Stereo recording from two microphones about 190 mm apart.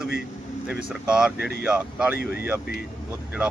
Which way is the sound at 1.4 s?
55° left (ahead or behind).